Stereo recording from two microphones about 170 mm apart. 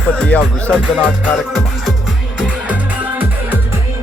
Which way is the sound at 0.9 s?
5° right (ahead or behind).